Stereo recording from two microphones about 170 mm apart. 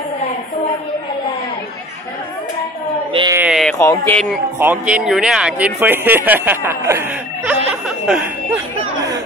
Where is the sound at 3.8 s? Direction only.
15° left (ahead or behind).